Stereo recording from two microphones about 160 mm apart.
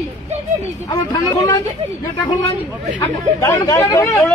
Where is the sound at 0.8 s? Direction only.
25° left (ahead or behind).